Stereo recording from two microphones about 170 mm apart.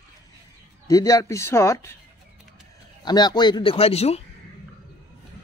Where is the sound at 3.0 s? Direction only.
25° left (ahead or behind).